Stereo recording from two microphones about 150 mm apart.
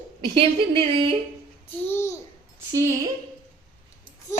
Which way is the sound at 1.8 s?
15° left (ahead or behind).